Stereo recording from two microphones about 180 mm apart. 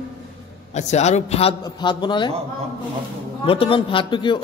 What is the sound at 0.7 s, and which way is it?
Speech, 40° left (ahead or behind).